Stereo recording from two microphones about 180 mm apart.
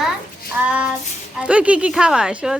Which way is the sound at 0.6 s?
5° right (ahead or behind).